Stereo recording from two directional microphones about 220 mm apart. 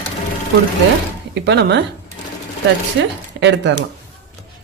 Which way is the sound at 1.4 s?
50° right (ahead or behind).